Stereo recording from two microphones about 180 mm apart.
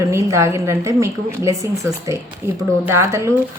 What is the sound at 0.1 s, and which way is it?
Speech, 15° right (ahead or behind).